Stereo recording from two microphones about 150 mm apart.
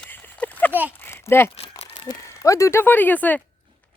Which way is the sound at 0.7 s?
10° right (ahead or behind).